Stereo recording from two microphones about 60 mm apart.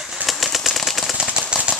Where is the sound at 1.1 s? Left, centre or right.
Centre.